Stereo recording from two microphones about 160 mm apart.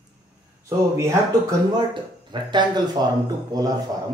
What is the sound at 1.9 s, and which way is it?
Speech, 30° right (ahead or behind).